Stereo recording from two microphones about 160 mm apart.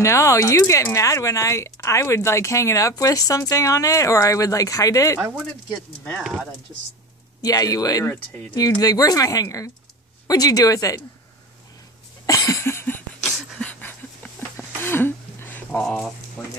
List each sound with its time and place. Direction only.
0.0 s speech: 20° left (ahead or behind)
5.4 s speech: 5° left (ahead or behind)
7.4 s speech: 25° left (ahead or behind)
8.5 s speech: 20° left (ahead or behind)
12.3 s a sound: 20° left (ahead or behind)
13.2 s a sound: 5° left (ahead or behind)
16.4 s speech: centre (ahead or behind)